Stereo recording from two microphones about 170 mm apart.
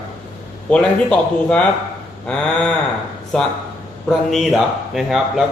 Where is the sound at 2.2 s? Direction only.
5° left (ahead or behind).